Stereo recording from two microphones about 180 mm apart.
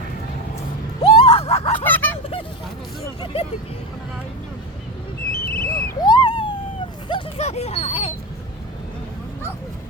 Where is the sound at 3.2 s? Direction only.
30° left (ahead or behind).